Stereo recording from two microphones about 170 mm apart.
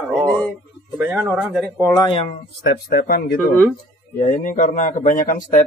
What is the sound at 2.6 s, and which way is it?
Speech, 70° left (ahead or behind).